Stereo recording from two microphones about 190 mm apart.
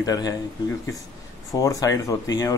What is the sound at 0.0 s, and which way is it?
Speech, 20° left (ahead or behind).